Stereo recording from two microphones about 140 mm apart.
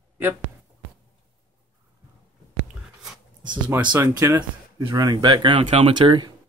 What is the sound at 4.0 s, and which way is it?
Speech, 20° right (ahead or behind).